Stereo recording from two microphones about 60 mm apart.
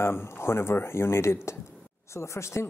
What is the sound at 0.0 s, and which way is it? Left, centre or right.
Speech, left.